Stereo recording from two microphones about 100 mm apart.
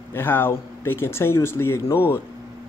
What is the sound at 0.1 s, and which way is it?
A man's voice, 20° left (ahead or behind).